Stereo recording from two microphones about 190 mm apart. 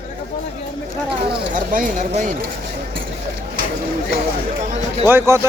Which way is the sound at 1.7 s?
45° right (ahead or behind).